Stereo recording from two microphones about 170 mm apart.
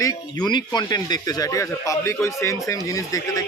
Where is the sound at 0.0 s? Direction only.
25° left (ahead or behind).